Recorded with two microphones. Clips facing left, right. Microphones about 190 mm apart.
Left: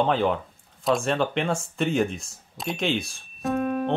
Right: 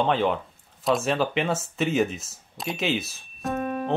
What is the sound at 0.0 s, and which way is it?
Speech, centre (ahead or behind).